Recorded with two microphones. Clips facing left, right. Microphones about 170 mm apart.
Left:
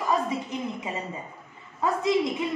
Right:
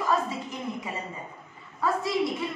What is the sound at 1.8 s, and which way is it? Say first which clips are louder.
Speech: left 1 dB; 20° left (ahead or behind).